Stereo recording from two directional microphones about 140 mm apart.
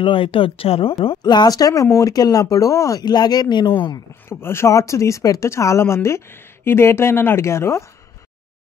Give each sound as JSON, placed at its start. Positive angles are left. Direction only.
{"t": 0.0, "sound": "speech", "side_deg": 40}
{"t": 4.3, "sound": "speech", "side_deg": 20}